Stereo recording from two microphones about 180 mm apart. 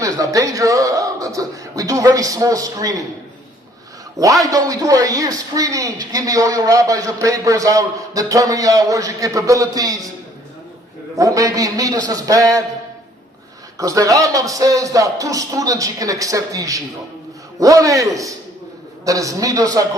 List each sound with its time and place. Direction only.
0.0 s speech: 20° right (ahead or behind)
4.2 s speech: 20° right (ahead or behind)
11.2 s speech: 20° right (ahead or behind)
13.7 s speech: 20° right (ahead or behind)